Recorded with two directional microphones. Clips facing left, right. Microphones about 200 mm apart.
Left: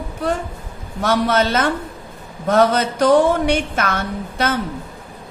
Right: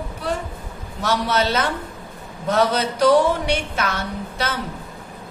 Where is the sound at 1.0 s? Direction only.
50° left (ahead or behind).